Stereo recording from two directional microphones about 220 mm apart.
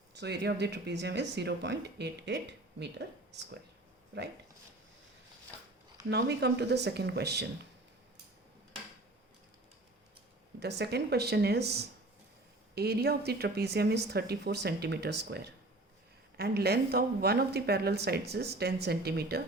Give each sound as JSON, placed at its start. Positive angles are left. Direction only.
{"t": 0.1, "sound": "speech", "side_deg": -50}
{"t": 6.1, "sound": "speech", "side_deg": -50}
{"t": 10.6, "sound": "speech", "side_deg": -50}